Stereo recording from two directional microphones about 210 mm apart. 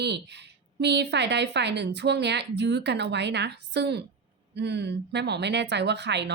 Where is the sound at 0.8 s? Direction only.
55° right (ahead or behind).